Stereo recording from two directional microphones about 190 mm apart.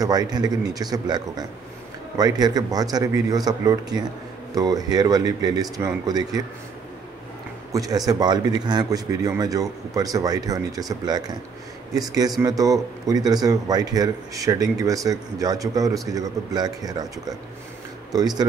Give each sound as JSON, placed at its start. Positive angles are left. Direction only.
{"t": 0.0, "sound": "a man's voice", "side_deg": -20}
{"t": 7.7, "sound": "a man's voice", "side_deg": -20}
{"t": 18.1, "sound": "a man's voice", "side_deg": -20}